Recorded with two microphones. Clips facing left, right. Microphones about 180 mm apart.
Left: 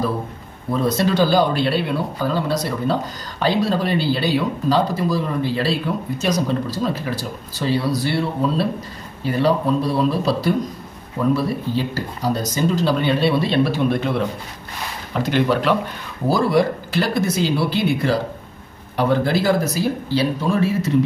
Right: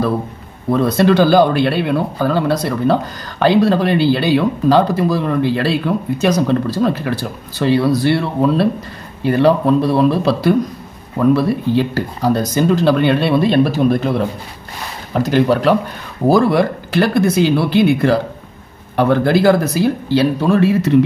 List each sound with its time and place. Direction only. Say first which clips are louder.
0.7 s speech: right 6 dB; 65° right (ahead or behind); by 15.8 s 40° right (ahead or behind)
16.3 s speech: right 5 dB; 55° right (ahead or behind)